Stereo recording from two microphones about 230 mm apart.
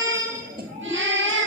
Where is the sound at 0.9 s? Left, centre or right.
Right.